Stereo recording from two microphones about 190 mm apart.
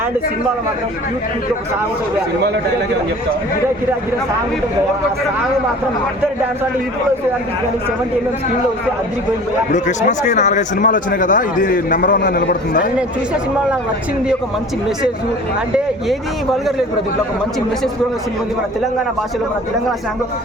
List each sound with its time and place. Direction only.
9.7 s speech: 40° left (ahead or behind); by 12.9 s 60° left (ahead or behind)
16.0 s speech: centre (ahead or behind)